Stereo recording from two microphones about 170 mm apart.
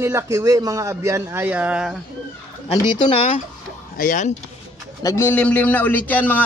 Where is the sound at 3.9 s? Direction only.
50° left (ahead or behind).